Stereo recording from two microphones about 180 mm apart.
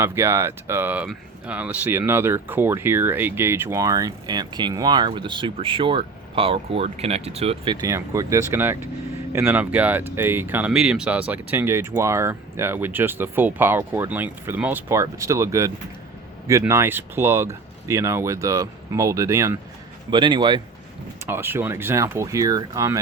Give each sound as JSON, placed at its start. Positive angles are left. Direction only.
{"t": 0.0, "sound": "speech", "side_deg": -15}
{"t": 21.2, "sound": "speech", "side_deg": -10}